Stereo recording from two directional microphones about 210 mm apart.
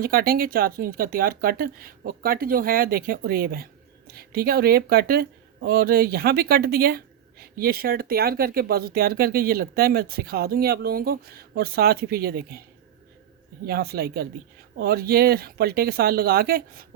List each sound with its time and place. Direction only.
0.0 s speech: 45° right (ahead or behind)
13.7 s speech: 50° right (ahead or behind)